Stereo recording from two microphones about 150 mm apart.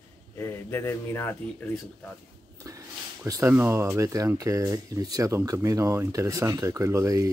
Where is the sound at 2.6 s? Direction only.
20° right (ahead or behind).